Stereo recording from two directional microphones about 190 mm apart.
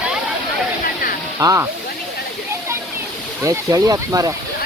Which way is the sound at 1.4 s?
15° right (ahead or behind).